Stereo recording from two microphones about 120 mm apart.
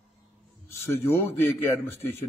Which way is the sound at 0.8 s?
20° left (ahead or behind).